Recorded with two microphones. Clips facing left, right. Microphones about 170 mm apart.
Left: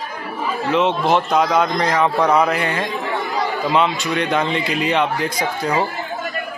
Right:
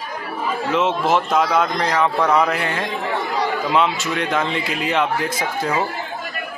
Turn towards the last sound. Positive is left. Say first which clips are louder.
# left 1 dB
turn(degrees=-5)  # may be behind; listen again after turning